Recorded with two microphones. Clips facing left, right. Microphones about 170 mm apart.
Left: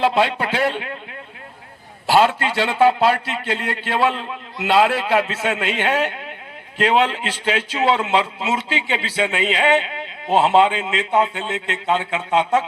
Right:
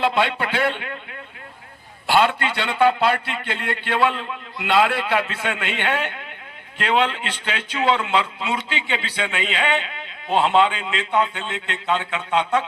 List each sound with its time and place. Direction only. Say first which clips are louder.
0.0 s speech: left 3 dB; 35° left (ahead or behind)
2.0 s a man's voice: left 3 dB; 40° left (ahead or behind)